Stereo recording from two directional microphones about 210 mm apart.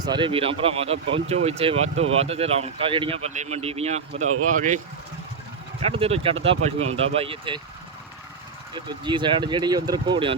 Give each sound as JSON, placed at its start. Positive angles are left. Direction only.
{"t": 0.0, "sound": "speech", "side_deg": -20}
{"t": 5.8, "sound": "speech", "side_deg": -30}
{"t": 8.7, "sound": "speech", "side_deg": -20}